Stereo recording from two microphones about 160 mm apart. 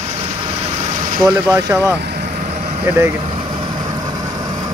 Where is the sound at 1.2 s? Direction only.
20° right (ahead or behind).